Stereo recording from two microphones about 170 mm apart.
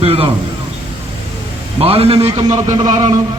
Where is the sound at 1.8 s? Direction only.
35° right (ahead or behind).